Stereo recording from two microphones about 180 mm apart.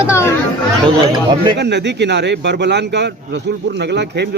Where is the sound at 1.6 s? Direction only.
70° right (ahead or behind).